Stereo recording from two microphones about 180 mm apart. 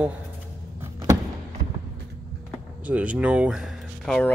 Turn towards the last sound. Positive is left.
turn(degrees=5)  # may be behind; listen again after turning